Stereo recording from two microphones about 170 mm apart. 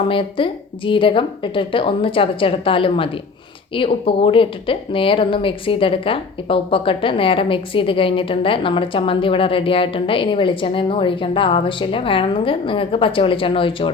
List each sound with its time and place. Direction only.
0.1 s speech: 30° left (ahead or behind)